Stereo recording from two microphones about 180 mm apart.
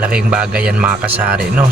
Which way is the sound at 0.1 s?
5° right (ahead or behind).